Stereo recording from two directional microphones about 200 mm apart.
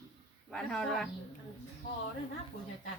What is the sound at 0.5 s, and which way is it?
Speech, 5° left (ahead or behind).